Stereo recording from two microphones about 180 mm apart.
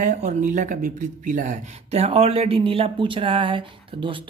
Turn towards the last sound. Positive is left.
turn(degrees=-30)  # may be behind; listen again after turning